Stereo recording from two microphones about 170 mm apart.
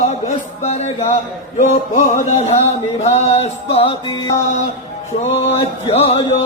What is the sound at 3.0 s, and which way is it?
Mantra, 40° left (ahead or behind).